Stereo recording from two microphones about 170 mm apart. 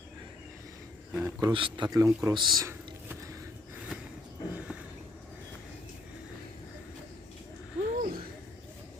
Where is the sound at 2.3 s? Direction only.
25° right (ahead or behind).